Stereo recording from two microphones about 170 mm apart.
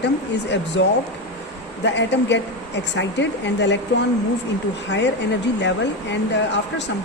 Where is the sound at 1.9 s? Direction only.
90° left.